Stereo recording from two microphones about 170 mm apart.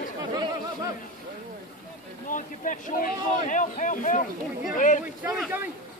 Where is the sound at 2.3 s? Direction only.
50° left (ahead or behind).